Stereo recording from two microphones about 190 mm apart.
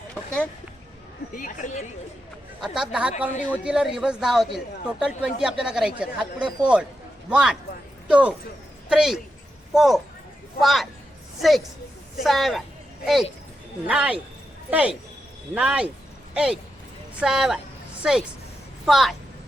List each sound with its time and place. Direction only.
1.4 s speech: 45° left (ahead or behind)
2.6 s a woman's voice: 5° right (ahead or behind)
13.8 s speech: 5° right (ahead or behind)